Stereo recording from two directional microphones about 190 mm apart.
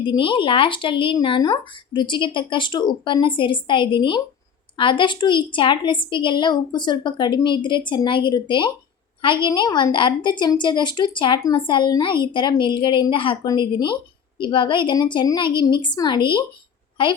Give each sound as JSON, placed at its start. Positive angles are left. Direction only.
{"t": 0.0, "sound": "a woman's voice", "side_deg": 25}